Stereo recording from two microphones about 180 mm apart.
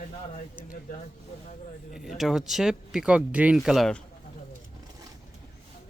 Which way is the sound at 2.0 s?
Centre (ahead or behind).